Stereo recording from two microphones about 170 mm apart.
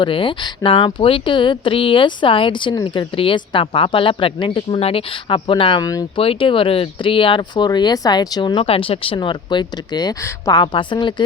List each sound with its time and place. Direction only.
0.0 s speech: 30° left (ahead or behind)